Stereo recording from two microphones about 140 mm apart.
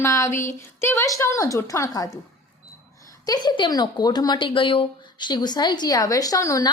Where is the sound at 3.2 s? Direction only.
30° left (ahead or behind).